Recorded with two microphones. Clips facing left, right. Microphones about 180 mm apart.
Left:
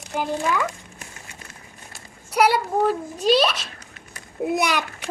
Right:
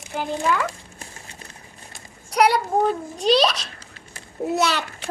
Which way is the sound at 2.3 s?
5° left (ahead or behind).